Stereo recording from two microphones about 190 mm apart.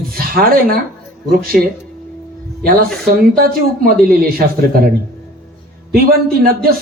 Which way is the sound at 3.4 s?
50° right (ahead or behind).